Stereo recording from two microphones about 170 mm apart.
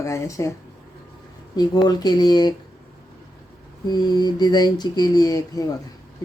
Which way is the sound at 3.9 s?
25° left (ahead or behind).